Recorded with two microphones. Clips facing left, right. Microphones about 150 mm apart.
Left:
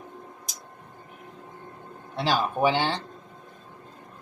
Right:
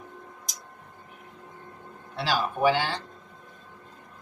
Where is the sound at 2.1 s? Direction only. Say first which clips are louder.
Left 2 dB; 20° left (ahead or behind).